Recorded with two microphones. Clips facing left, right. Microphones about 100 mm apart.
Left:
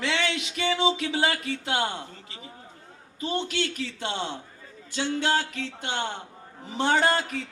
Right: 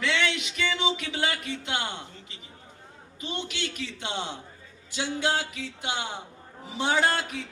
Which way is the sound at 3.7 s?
20° right (ahead or behind).